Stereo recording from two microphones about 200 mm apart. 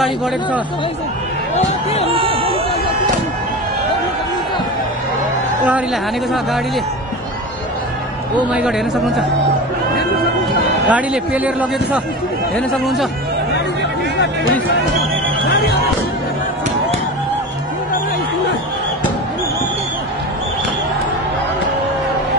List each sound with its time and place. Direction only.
1.5 s speech: 30° left (ahead or behind)
2.0 s a sound: 30° right (ahead or behind)
8.5 s speech: 5° right (ahead or behind)
10.9 s a man's voice: 5° right (ahead or behind)
15.5 s music: 55° left (ahead or behind)